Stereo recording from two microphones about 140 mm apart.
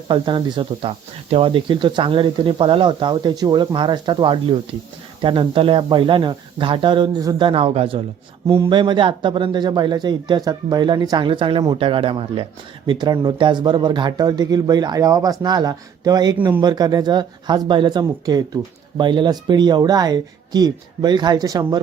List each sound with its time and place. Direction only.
0.1 s speech: 35° right (ahead or behind)
8.7 s speech: 35° right (ahead or behind)